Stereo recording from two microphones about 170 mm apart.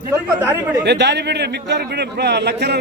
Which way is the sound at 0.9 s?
85° right.